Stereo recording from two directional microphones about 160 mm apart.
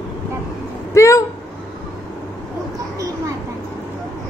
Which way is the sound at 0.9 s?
20° left (ahead or behind).